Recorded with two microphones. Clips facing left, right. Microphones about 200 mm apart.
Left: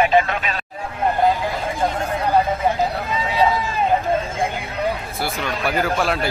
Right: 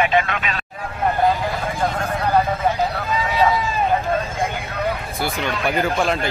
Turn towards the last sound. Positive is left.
turn(degrees=5)  # may be behind; listen again after turning